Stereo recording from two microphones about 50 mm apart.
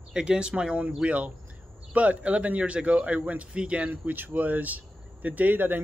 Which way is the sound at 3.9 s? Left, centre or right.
Right.